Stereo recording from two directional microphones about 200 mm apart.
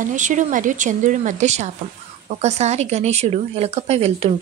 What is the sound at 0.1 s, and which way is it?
Speech, 40° right (ahead or behind).